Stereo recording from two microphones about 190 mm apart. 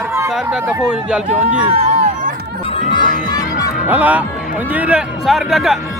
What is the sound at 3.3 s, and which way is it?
Music, 20° left (ahead or behind).